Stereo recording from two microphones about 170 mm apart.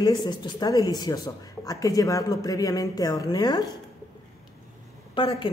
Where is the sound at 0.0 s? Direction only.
25° left (ahead or behind).